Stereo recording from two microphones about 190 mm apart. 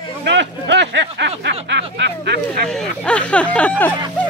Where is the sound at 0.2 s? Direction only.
70° right (ahead or behind).